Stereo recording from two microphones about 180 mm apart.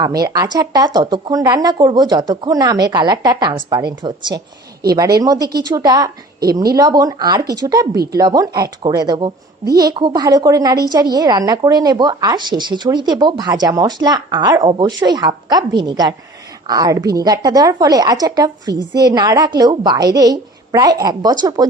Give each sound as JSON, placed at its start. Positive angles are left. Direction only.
{"t": 0.0, "sound": "speech", "side_deg": -20}